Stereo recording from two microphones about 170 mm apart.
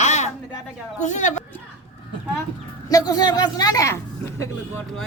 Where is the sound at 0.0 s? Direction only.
40° left (ahead or behind).